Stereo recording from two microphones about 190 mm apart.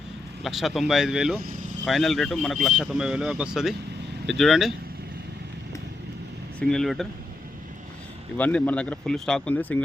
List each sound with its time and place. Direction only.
0.4 s speech: centre (ahead or behind)
1.5 s vehicle: 45° right (ahead or behind)
1.8 s speech: centre (ahead or behind)
6.6 s speech: 5° left (ahead or behind)
8.4 s speech: 10° left (ahead or behind)